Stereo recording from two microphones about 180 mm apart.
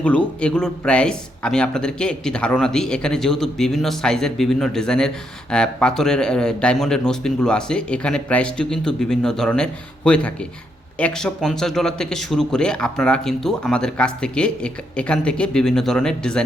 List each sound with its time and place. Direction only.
0.0 s speech: 5° left (ahead or behind)